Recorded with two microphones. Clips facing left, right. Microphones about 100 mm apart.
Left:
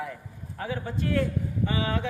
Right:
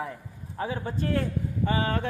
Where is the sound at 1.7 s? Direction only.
45° right (ahead or behind).